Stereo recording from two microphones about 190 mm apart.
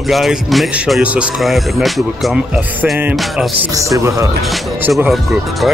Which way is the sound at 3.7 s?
15° right (ahead or behind).